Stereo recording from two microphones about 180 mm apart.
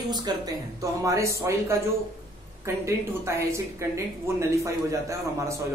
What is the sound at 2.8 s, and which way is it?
Speech, 15° right (ahead or behind).